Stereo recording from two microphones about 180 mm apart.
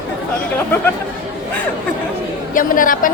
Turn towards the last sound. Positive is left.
turn(degrees=50)  # may be behind; listen again after turning